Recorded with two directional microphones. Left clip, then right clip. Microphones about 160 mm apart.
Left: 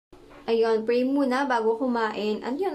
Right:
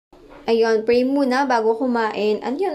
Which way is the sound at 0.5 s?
20° right (ahead or behind).